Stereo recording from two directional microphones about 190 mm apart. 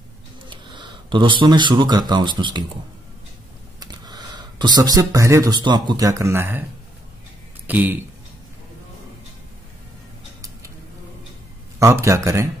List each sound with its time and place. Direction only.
0.5 s speech: 25° right (ahead or behind)
3.8 s speech: 20° right (ahead or behind)
7.6 s speech: 10° right (ahead or behind)
11.8 s speech: 15° right (ahead or behind)